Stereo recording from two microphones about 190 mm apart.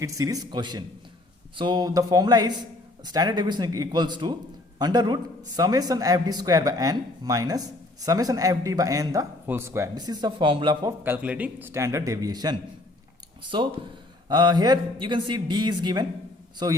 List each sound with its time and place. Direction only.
0.0 s a man's voice: 15° right (ahead or behind)
11.0 s a man's voice: 10° right (ahead or behind)
14.3 s a man's voice: 20° right (ahead or behind)